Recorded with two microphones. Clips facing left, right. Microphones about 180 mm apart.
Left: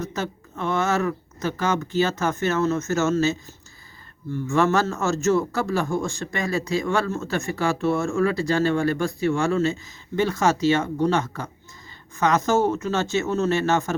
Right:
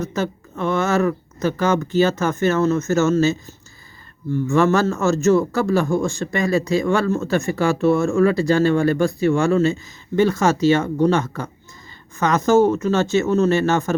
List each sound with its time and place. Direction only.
0.1 s a man's voice: 50° right (ahead or behind)
4.5 s a man's voice: 40° right (ahead or behind)